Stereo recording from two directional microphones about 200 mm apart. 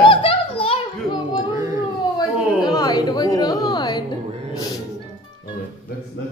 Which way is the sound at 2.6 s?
20° left (ahead or behind).